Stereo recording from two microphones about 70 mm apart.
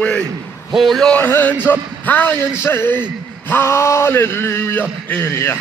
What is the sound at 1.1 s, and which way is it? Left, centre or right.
Speech, left.